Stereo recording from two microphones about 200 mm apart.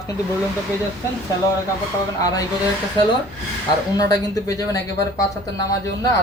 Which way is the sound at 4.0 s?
20° left (ahead or behind).